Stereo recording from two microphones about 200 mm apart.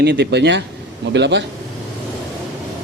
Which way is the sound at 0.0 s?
60° right (ahead or behind).